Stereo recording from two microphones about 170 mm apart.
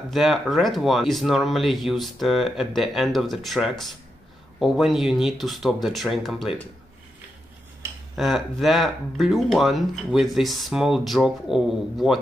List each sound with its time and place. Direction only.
0.1 s speech: centre (ahead or behind)
8.2 s speech: centre (ahead or behind)